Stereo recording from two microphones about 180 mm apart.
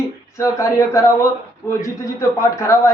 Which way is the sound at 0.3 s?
15° left (ahead or behind).